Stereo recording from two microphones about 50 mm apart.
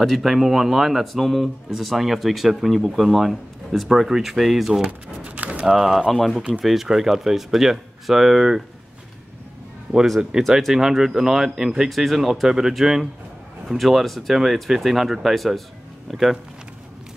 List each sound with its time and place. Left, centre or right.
0.0 s speech: centre
4.8 s a sound: right
5.6 s speech: centre
10.6 s speech: centre